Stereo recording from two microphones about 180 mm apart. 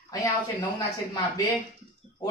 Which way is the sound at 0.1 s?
20° left (ahead or behind).